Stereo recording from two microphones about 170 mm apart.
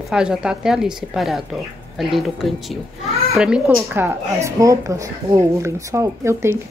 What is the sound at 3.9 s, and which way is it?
Speech, 15° right (ahead or behind).